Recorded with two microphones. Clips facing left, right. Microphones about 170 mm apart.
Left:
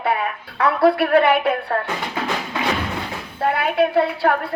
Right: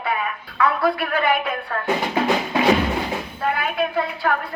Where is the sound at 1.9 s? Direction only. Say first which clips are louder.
Right 5 dB; 25° right (ahead or behind).